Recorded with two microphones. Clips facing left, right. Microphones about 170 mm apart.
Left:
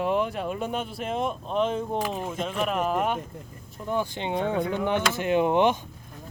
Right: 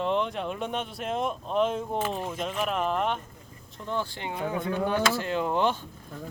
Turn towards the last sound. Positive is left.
turn(degrees=20)  # may be behind; listen again after turning